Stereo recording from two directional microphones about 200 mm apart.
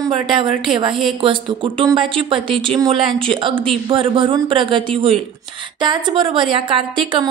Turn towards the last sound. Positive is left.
turn(degrees=-25)  # may be behind; listen again after turning